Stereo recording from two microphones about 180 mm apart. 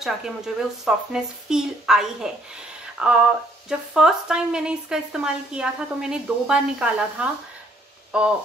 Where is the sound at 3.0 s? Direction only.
5° right (ahead or behind).